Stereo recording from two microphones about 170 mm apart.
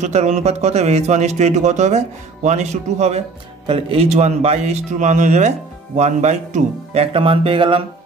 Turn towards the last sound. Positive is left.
turn(degrees=-30)  # may be behind; listen again after turning